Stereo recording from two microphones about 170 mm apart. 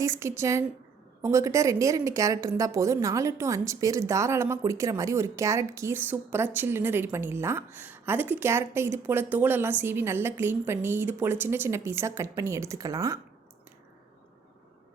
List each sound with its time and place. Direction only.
0.0 s a woman's voice: 15° right (ahead or behind)